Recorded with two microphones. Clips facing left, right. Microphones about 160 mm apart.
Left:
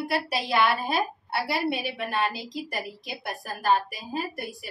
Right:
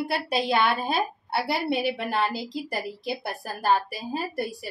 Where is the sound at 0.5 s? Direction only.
25° right (ahead or behind).